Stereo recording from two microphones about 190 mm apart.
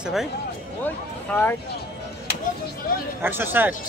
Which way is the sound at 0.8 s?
10° left (ahead or behind).